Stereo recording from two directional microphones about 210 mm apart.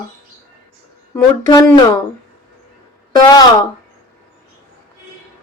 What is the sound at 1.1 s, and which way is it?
Speech, 15° left (ahead or behind).